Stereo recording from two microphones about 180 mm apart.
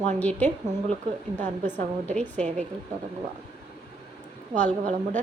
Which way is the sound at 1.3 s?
40° right (ahead or behind).